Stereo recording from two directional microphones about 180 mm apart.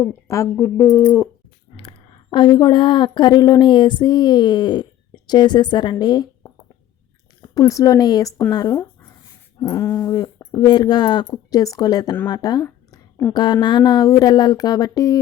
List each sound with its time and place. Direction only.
0.0 s speech: 15° left (ahead or behind)
1.7 s a woman's voice: 30° left (ahead or behind)